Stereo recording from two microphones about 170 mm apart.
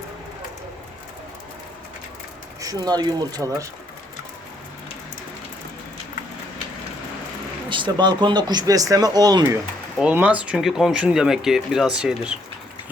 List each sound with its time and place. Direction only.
2.6 s speech: 20° right (ahead or behind)
7.7 s speech: 25° right (ahead or behind)
10.0 s speech: 10° right (ahead or behind)